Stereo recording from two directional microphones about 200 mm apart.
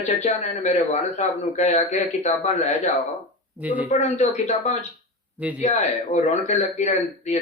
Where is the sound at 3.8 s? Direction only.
35° left (ahead or behind).